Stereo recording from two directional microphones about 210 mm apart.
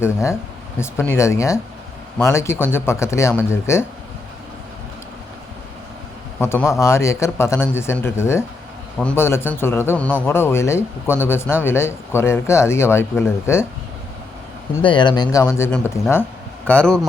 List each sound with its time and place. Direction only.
0.0 s speech: 15° left (ahead or behind)
6.4 s speech: 10° left (ahead or behind)
14.8 s a man's voice: 20° left (ahead or behind); by 17.1 s 5° left (ahead or behind)